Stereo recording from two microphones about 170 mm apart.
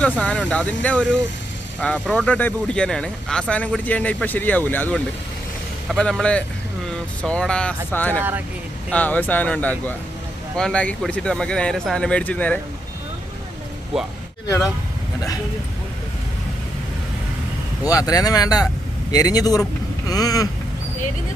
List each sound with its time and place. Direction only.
0.0 s speech: 5° left (ahead or behind)
17.8 s speech: 20° left (ahead or behind)